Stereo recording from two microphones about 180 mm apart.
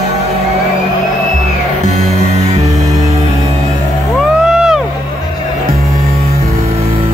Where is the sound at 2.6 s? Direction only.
20° right (ahead or behind).